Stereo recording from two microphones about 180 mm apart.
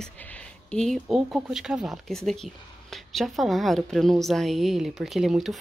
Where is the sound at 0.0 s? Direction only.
5° left (ahead or behind).